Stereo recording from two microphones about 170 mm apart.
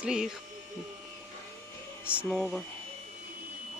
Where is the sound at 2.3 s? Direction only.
5° right (ahead or behind).